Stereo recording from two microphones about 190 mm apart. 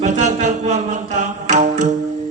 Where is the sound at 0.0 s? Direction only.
40° right (ahead or behind).